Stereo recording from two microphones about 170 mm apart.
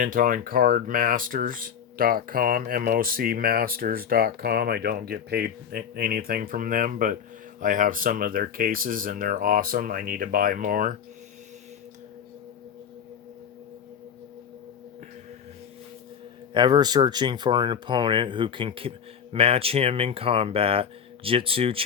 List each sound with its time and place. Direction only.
0.0 s speech: 55° right (ahead or behind)
16.6 s speech: 25° right (ahead or behind)